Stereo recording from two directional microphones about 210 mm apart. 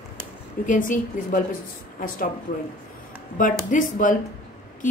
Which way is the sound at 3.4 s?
40° left (ahead or behind).